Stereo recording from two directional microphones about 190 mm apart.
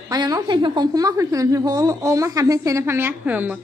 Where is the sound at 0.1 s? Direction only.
20° right (ahead or behind).